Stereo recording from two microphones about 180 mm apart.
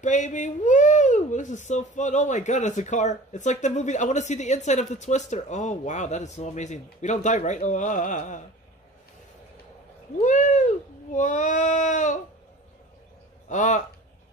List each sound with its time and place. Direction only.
0.0 s speech: 45° left (ahead or behind)
10.2 s a sound: 45° left (ahead or behind)
13.5 s speech: 45° left (ahead or behind)